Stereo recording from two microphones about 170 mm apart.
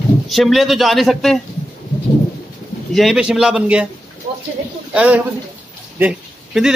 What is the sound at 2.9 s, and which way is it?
Speech, centre (ahead or behind).